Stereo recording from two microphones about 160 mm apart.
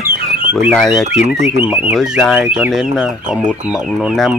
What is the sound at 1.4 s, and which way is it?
Speech, 10° right (ahead or behind).